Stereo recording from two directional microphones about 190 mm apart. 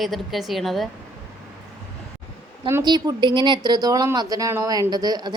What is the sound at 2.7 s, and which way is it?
A woman's voice, 20° right (ahead or behind).